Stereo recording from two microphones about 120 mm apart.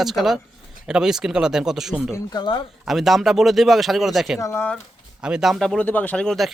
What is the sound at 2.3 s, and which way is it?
Speech, 40° left (ahead or behind).